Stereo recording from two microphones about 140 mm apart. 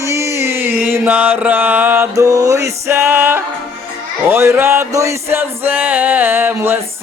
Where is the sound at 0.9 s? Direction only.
15° right (ahead or behind).